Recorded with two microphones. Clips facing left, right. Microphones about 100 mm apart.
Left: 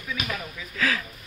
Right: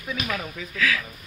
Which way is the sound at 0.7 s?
35° left (ahead or behind).